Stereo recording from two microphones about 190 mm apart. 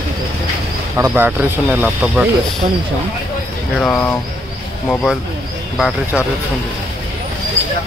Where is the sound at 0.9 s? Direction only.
10° right (ahead or behind).